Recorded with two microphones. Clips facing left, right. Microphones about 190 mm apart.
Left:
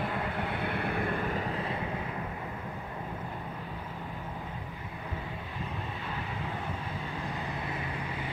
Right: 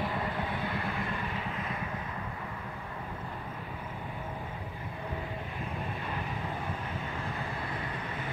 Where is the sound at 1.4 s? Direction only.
35° left (ahead or behind).